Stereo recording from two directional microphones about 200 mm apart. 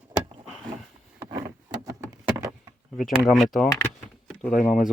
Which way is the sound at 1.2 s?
15° right (ahead or behind).